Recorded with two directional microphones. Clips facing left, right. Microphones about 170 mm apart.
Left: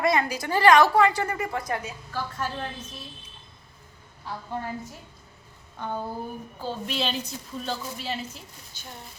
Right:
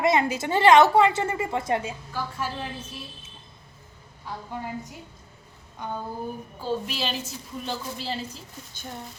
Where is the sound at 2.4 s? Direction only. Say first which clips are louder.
Even; 10° right (ahead or behind).